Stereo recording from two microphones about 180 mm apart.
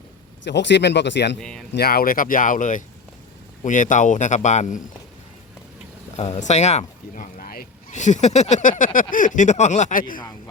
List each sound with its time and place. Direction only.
0.4 s speech: 75° left (ahead or behind)
1.4 s speech: 5° left (ahead or behind)
1.7 s speech: 60° left (ahead or behind); by 4.8 s 40° left (ahead or behind)
6.1 s speech: 40° left (ahead or behind)
10.2 s a sound: 20° left (ahead or behind)